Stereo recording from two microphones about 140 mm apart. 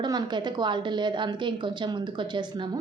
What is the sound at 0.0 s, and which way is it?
A woman's voice, 30° right (ahead or behind).